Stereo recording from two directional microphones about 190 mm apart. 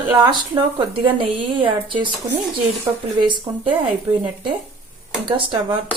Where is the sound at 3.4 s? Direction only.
25° right (ahead or behind).